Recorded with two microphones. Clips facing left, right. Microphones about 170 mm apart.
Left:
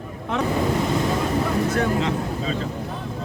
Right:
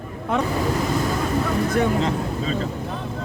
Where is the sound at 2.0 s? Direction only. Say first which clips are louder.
Right 1 dB; 40° right (ahead or behind).